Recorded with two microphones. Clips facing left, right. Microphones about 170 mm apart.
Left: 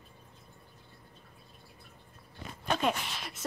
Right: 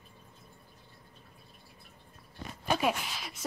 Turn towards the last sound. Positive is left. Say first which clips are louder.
# even
turn(degrees=0)  # may be behind; listen again after turning